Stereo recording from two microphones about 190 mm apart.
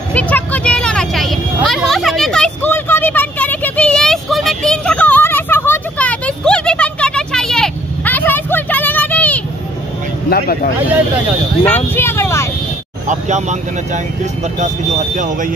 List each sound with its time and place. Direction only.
0.1 s vehicle: 5° left (ahead or behind)
10.3 s speech: 50° left (ahead or behind)
11.9 s vehicle: 10° left (ahead or behind)
13.0 s speech: 40° right (ahead or behind)